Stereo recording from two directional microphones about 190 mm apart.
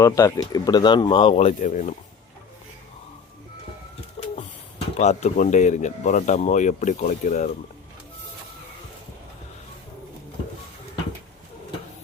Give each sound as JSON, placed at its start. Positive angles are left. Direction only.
{"t": 0.0, "sound": "speech", "side_deg": 15}
{"t": 4.2, "sound": "bird", "side_deg": 35}
{"t": 4.9, "sound": "speech", "side_deg": 35}